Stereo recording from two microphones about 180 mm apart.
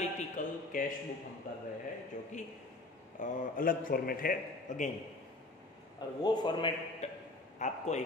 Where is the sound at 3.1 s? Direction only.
45° left (ahead or behind).